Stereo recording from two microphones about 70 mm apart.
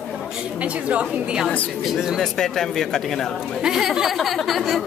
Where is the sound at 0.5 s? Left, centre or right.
Centre.